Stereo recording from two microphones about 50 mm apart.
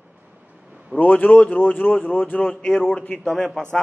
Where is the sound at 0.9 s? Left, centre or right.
Left.